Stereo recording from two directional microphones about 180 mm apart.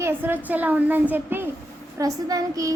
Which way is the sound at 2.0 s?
20° right (ahead or behind).